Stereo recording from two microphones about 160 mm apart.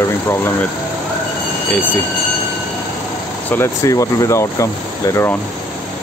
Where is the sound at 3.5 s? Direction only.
15° left (ahead or behind).